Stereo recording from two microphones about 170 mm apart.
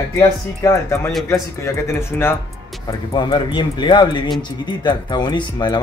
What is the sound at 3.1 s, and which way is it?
A man's voice, 30° left (ahead or behind).